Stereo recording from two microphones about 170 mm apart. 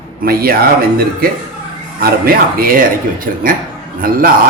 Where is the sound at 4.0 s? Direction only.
55° right (ahead or behind).